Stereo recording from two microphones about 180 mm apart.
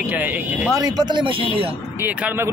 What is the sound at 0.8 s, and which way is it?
Speech, 20° right (ahead or behind).